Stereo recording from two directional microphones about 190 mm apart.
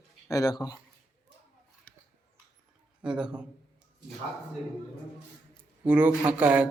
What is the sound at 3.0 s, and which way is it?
Speech, 5° right (ahead or behind).